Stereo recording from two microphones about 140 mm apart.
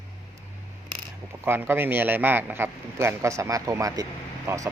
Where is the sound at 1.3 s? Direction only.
20° right (ahead or behind).